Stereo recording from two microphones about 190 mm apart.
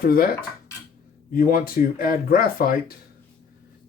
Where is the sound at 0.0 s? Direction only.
50° left (ahead or behind).